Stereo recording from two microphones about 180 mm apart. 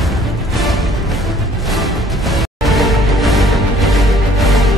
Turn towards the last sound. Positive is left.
turn(degrees=0)  # may be behind; listen again after turning